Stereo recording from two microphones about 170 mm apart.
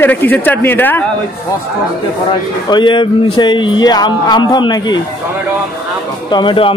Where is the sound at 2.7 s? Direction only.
30° left (ahead or behind).